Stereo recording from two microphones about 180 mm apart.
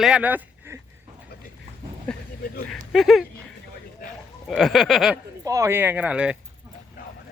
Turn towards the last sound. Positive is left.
turn(degrees=-5)  # may be behind; listen again after turning